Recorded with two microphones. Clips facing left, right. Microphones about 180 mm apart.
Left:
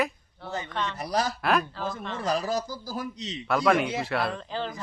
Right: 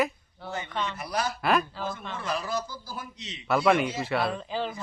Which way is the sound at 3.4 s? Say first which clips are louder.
Even; centre (ahead or behind).